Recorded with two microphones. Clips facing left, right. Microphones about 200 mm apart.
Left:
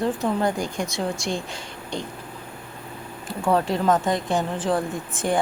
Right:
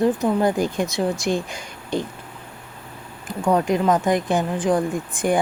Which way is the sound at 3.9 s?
20° right (ahead or behind).